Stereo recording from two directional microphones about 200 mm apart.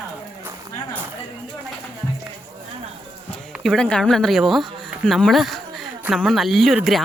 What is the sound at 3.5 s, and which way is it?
Speech, centre (ahead or behind).